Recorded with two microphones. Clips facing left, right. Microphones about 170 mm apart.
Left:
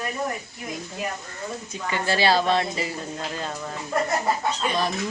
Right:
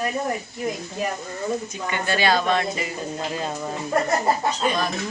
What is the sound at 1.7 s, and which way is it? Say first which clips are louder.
A woman's voice: even; 30° left (ahead or behind).